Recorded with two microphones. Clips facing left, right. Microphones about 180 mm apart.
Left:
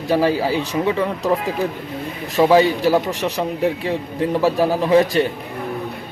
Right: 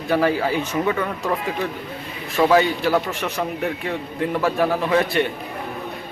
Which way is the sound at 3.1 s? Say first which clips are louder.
Left 3 dB; 40° left (ahead or behind).